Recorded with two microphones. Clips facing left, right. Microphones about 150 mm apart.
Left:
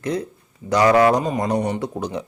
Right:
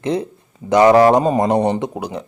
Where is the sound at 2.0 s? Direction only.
Centre (ahead or behind).